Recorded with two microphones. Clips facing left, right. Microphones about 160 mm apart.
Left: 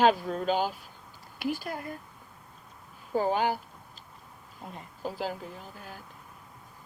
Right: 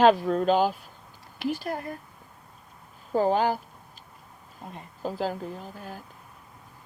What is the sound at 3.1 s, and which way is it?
Speech, 40° right (ahead or behind).